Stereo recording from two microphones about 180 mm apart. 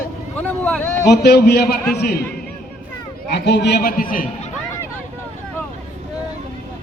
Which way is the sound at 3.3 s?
70° left (ahead or behind).